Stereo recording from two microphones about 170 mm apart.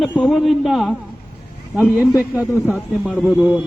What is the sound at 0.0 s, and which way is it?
A man's voice, 5° left (ahead or behind).